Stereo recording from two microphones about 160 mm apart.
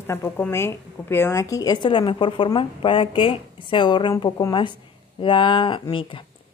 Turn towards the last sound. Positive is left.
turn(degrees=30)  # may be behind; listen again after turning